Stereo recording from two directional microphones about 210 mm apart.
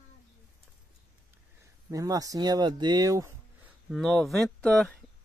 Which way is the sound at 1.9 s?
15° right (ahead or behind).